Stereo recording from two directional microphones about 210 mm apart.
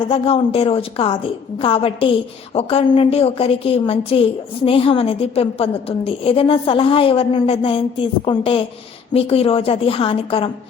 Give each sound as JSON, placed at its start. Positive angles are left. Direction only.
{"t": 0.1, "sound": "a woman's voice", "side_deg": 25}